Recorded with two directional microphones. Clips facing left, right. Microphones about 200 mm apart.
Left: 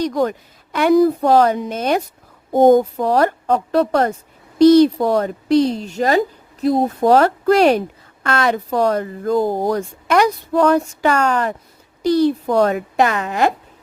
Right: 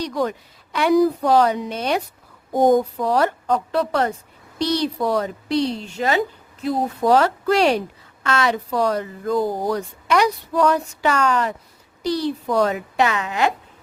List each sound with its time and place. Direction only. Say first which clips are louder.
0.0 s speech: left 5 dB; 50° left (ahead or behind)
2.5 s a sound: left 5 dB; 25° left (ahead or behind)
3.0 s speech: left 3 dB; 45° left (ahead or behind)